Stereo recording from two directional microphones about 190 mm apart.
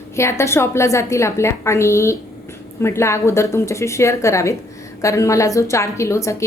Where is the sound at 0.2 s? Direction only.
15° left (ahead or behind).